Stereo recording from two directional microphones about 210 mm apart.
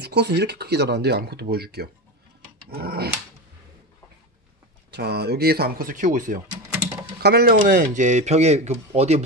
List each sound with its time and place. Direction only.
0.0 s speech: 50° right (ahead or behind)
4.9 s speech: 50° right (ahead or behind)
7.2 s speech: 50° right (ahead or behind); by 9.2 s 30° right (ahead or behind)